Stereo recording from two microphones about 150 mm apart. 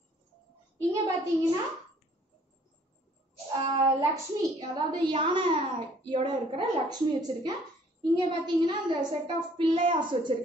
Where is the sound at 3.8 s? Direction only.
25° right (ahead or behind).